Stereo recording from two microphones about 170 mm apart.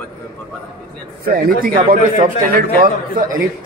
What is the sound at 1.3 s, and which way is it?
Speech, 60° right (ahead or behind).